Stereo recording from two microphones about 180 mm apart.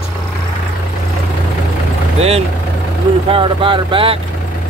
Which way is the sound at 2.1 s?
35° right (ahead or behind).